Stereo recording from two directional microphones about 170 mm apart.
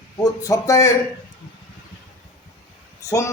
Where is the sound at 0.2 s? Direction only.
20° left (ahead or behind).